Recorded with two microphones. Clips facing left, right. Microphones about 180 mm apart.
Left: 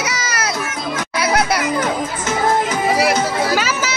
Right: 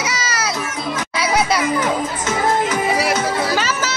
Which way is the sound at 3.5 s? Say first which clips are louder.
Left 1 dB; 5° left (ahead or behind).